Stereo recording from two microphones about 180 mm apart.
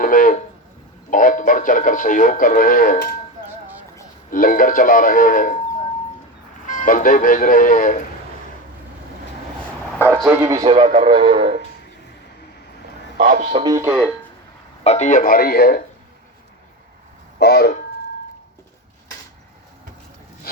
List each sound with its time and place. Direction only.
0.0 s a sound: 50° left (ahead or behind)
1.1 s speech: 50° left (ahead or behind)
4.3 s speech: 50° left (ahead or behind)
6.7 s speech: 45° left (ahead or behind)
10.0 s a man's voice: 15° right (ahead or behind)
10.6 s speech: 30° right (ahead or behind)
13.2 s speech: 50° right (ahead or behind)
13.5 s speech: 25° right (ahead or behind)
14.8 s speech: 40° left (ahead or behind); by 15.8 s 60° left (ahead or behind)
17.4 s speech: 65° left (ahead or behind)